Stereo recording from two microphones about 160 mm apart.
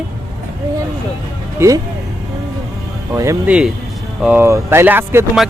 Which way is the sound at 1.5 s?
20° right (ahead or behind).